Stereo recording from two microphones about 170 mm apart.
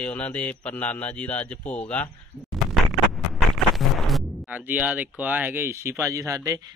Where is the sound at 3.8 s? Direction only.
Centre (ahead or behind).